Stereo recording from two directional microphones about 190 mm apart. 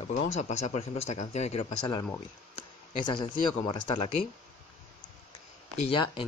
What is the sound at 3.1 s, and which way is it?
Speech, 25° left (ahead or behind).